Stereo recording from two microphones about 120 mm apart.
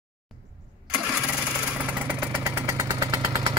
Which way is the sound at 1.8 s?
10° right (ahead or behind).